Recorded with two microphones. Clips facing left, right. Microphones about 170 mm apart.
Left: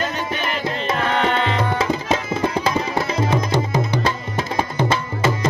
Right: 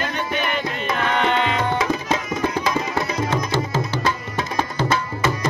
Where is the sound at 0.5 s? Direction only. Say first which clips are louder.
Left 1 dB; 30° left (ahead or behind).